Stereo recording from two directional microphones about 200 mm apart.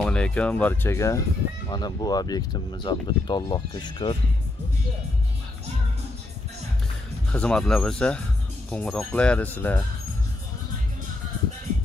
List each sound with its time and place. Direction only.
0.0 s speech: 5° left (ahead or behind); by 4.2 s 25° left (ahead or behind)
7.3 s speech: 5° left (ahead or behind)